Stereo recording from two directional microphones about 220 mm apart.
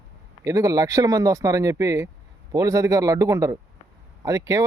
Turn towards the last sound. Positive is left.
turn(degrees=-15)  # may be behind; listen again after turning